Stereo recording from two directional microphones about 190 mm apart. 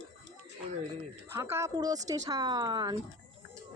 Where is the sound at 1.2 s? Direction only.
15° right (ahead or behind).